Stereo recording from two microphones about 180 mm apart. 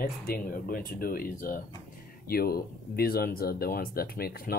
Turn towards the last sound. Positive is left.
turn(degrees=55)  # may be behind; listen again after turning